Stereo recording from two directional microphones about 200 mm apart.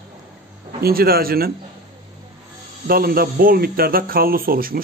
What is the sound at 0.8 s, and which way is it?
Speech, 50° right (ahead or behind).